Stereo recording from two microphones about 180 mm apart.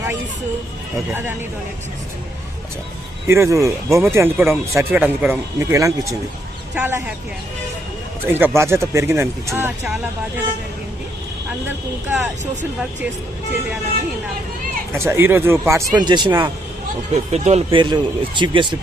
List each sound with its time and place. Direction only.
1.1 s speech: 10° right (ahead or behind)
3.2 s speech: 15° right (ahead or behind)
8.3 s speech: 10° right (ahead or behind)
12.0 s speech: centre (ahead or behind)
14.9 s speech: 15° right (ahead or behind)
17.3 s speech: 35° right (ahead or behind)